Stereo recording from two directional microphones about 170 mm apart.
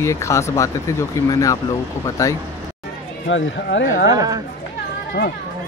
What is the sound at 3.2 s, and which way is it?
Speech, 90° left.